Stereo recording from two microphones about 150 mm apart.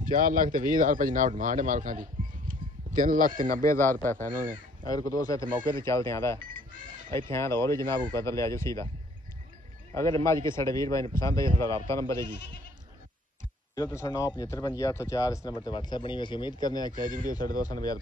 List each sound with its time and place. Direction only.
0.0 s speech: 65° right (ahead or behind)
3.6 s a man's voice: 15° left (ahead or behind)
4.3 s speech: 65° right (ahead or behind)
4.8 s speech: 25° left (ahead or behind)
6.5 s speech: 65° right (ahead or behind)
7.1 s speech: 35° right (ahead or behind)
7.3 s speech: 20° left (ahead or behind)
9.9 s speech: 20° left (ahead or behind)
13.8 s speech: 20° left (ahead or behind)
16.9 s speech: 65° right (ahead or behind)